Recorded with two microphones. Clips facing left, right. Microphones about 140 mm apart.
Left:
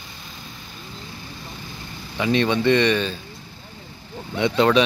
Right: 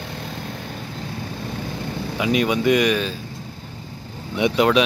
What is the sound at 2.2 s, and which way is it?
Speech, 10° right (ahead or behind).